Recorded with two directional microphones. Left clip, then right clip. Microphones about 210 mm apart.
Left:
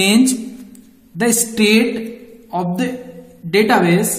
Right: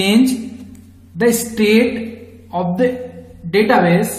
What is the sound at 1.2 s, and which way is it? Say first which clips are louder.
Speech: right 1 dB; 45° left (ahead or behind).